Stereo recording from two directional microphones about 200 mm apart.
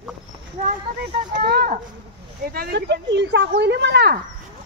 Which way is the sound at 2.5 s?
50° right (ahead or behind).